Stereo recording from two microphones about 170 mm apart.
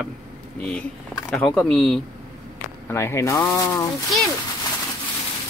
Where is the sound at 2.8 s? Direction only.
15° left (ahead or behind).